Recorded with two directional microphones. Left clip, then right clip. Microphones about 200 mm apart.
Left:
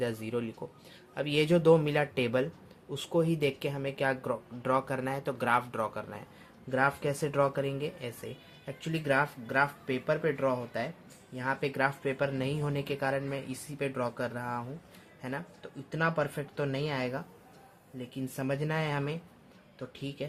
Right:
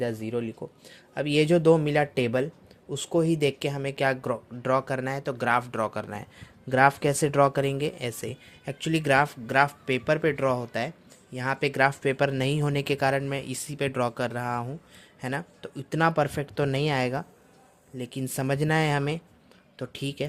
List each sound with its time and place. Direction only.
0.0 s speech: 25° right (ahead or behind); by 20.2 s 50° right (ahead or behind)